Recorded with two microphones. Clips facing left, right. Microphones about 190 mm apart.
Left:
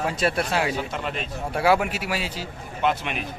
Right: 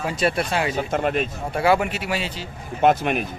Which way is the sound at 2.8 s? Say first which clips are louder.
Right 7 dB; 45° right (ahead or behind).